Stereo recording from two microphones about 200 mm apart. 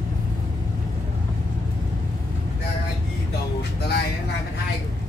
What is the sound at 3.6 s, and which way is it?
Music, 55° left (ahead or behind).